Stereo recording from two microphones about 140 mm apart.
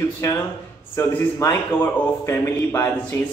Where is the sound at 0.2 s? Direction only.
20° left (ahead or behind).